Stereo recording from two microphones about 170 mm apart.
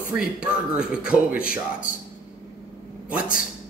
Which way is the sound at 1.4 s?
60° left (ahead or behind).